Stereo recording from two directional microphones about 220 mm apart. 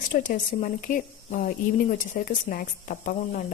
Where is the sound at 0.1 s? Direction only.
35° left (ahead or behind).